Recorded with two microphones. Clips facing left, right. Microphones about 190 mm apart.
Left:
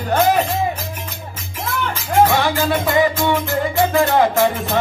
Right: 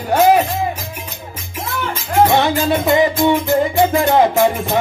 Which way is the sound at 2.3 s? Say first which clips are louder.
Right 3 dB; 20° right (ahead or behind).